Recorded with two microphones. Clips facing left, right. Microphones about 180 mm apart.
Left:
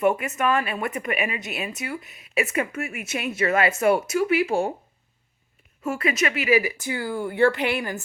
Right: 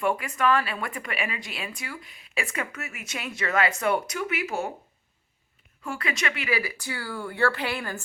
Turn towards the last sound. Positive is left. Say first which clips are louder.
# left 5 dB
turn(degrees=20)  # may be behind; listen again after turning